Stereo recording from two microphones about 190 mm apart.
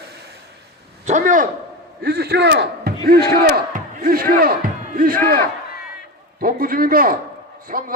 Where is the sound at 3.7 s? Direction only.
50° right (ahead or behind).